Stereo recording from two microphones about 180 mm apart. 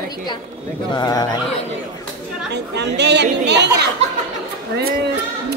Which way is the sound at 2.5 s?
70° right (ahead or behind).